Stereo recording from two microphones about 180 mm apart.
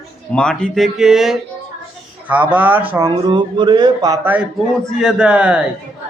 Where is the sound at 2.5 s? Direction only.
10° right (ahead or behind).